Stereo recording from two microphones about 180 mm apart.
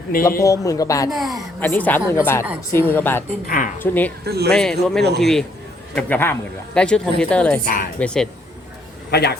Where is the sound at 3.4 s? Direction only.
50° left (ahead or behind).